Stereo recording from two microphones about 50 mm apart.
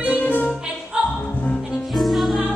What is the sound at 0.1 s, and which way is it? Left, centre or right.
Music, left.